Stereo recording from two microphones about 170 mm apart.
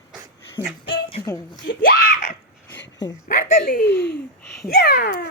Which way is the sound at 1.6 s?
60° left (ahead or behind).